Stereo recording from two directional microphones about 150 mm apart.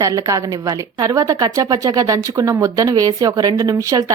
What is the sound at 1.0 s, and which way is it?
Speech, 25° right (ahead or behind).